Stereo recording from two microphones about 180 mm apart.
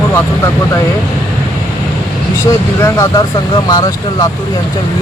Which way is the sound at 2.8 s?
20° left (ahead or behind).